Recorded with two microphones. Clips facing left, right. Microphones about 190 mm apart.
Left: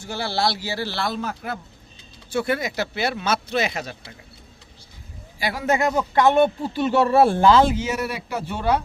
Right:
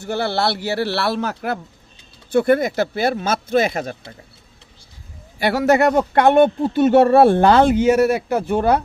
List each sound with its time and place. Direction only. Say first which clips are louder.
0.0 s speech: right 4 dB; 60° right (ahead or behind)
2.3 s speech: right 8 dB; 50° right (ahead or behind)
5.4 s speech: right 7 dB; 70° right (ahead or behind); by 8.8 s 50° right (ahead or behind)